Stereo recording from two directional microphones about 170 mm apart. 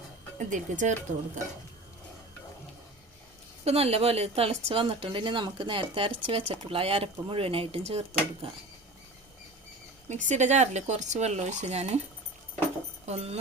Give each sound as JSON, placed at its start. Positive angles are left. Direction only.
{"t": 0.3, "sound": "speech", "side_deg": -45}
{"t": 3.6, "sound": "speech", "side_deg": -40}
{"t": 10.1, "sound": "speech", "side_deg": -45}
{"t": 13.1, "sound": "speech", "side_deg": -40}